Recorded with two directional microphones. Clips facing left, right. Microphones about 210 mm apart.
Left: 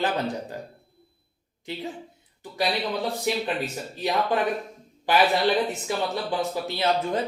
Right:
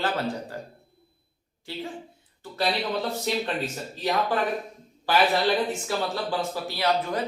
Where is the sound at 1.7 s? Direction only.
20° left (ahead or behind).